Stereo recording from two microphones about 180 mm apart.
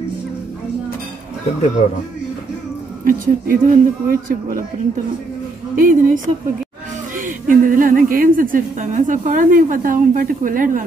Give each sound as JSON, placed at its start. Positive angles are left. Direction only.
{"t": 3.1, "sound": "speech", "side_deg": -55}
{"t": 5.8, "sound": "speech", "side_deg": -50}